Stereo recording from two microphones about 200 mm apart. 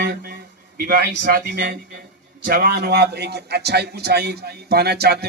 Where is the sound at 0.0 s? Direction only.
50° right (ahead or behind).